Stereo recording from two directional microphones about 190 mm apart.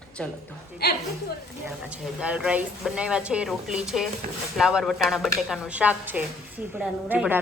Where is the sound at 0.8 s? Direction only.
55° left (ahead or behind).